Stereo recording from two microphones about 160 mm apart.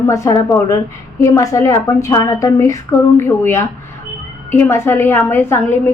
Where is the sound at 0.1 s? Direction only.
20° left (ahead or behind).